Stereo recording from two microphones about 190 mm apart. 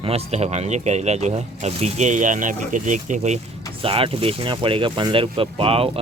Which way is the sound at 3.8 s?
30° right (ahead or behind).